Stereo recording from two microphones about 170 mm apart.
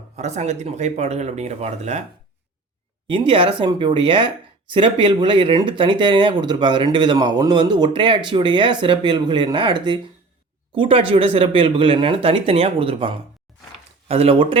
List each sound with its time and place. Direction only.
0.2 s speech: 40° right (ahead or behind)
3.1 s speech: 30° right (ahead or behind)